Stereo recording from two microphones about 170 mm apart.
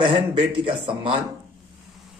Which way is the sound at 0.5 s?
30° right (ahead or behind).